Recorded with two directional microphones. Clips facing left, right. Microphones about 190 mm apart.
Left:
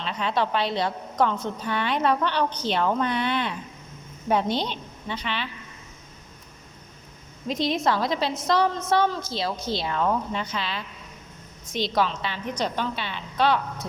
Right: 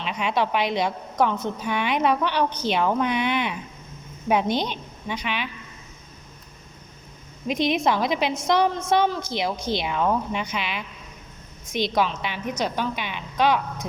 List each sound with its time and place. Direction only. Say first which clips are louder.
0.0 s a woman's voice: right 1 dB; 15° right (ahead or behind)
7.4 s a woman's voice: right 2 dB; 15° right (ahead or behind)